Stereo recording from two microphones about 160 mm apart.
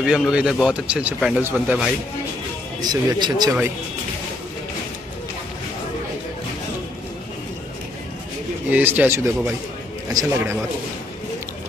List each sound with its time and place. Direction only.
0.0 s speech: 5° right (ahead or behind)
2.8 s a man's voice: 25° right (ahead or behind)
8.6 s a man's voice: 10° right (ahead or behind)